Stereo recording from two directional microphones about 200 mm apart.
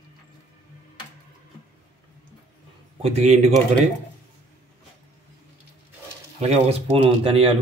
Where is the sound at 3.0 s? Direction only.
35° right (ahead or behind).